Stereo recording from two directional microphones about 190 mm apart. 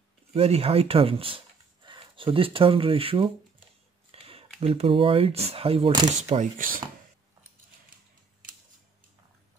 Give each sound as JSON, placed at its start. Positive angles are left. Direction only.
{"t": 0.3, "sound": "speech", "side_deg": -30}